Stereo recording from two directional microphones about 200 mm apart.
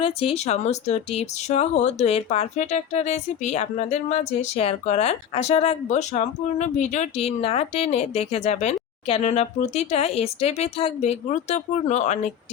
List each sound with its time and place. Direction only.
0.0 s speech: 30° left (ahead or behind)